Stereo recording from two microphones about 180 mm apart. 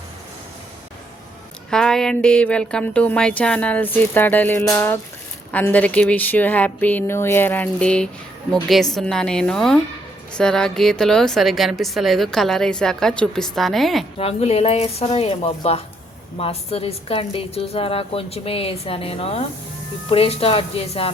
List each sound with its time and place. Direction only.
1.7 s a woman's voice: 5° left (ahead or behind)
14.2 s a woman's voice: 35° left (ahead or behind)